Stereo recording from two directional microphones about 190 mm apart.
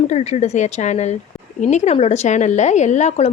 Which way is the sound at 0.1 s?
35° left (ahead or behind).